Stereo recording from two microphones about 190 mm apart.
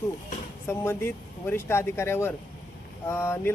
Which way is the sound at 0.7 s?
10° left (ahead or behind).